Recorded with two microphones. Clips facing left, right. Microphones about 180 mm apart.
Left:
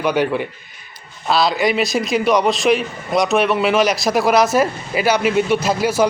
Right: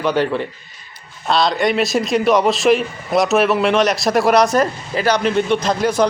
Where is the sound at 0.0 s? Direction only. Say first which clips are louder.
Even; 10° left (ahead or behind).